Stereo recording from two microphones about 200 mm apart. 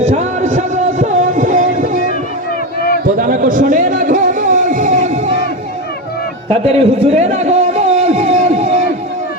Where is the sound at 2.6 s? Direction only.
50° left (ahead or behind).